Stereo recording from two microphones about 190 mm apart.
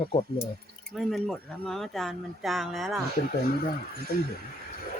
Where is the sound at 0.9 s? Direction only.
Centre (ahead or behind).